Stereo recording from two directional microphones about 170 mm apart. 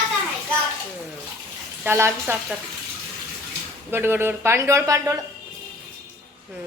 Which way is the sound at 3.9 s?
15° right (ahead or behind).